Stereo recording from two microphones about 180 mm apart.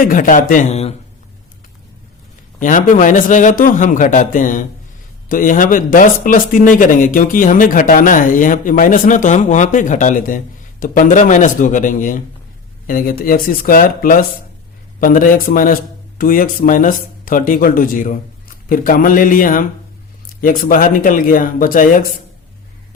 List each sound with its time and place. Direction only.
0.0 s speech: 50° left (ahead or behind)
2.6 s speech: 45° left (ahead or behind)